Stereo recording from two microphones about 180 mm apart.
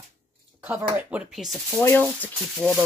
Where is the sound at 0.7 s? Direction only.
10° right (ahead or behind).